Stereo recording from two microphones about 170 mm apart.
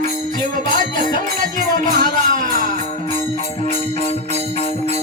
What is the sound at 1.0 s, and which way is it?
Music, 55° right (ahead or behind).